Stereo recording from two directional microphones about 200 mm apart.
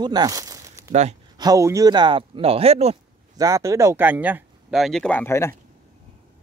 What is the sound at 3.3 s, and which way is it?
Speech, 15° right (ahead or behind).